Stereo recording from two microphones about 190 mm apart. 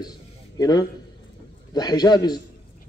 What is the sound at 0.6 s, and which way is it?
Speech, 20° left (ahead or behind).